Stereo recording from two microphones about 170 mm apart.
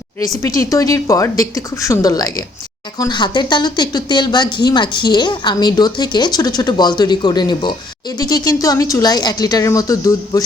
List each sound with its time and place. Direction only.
0.4 s a woman's voice: 20° left (ahead or behind)